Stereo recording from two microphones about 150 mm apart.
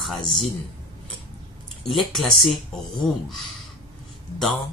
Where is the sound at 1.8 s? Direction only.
Centre (ahead or behind).